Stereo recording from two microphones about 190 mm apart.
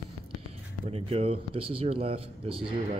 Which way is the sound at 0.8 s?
30° right (ahead or behind).